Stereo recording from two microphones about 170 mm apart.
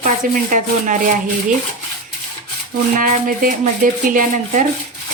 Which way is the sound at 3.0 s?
50° right (ahead or behind).